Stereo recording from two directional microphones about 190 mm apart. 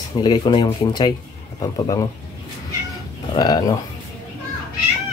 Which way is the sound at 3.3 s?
20° left (ahead or behind).